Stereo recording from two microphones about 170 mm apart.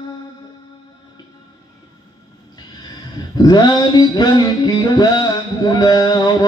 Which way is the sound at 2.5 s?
25° left (ahead or behind).